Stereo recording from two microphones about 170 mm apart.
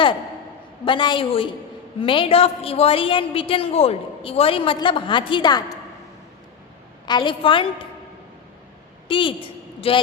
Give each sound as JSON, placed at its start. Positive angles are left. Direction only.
{"t": 0.9, "sound": "a woman's voice", "side_deg": 30}
{"t": 7.0, "sound": "a woman's voice", "side_deg": 25}
{"t": 9.0, "sound": "a woman's voice", "side_deg": 30}